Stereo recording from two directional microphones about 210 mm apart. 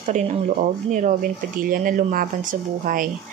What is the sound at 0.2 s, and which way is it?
Speech, 35° right (ahead or behind).